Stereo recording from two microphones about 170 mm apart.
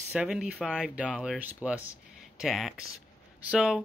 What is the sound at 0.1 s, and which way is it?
A man's voice, 5° right (ahead or behind).